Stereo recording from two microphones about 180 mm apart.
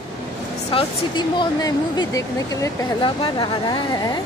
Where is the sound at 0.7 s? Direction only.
30° left (ahead or behind).